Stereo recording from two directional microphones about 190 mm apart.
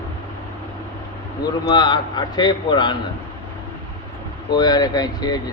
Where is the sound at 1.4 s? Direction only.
25° left (ahead or behind).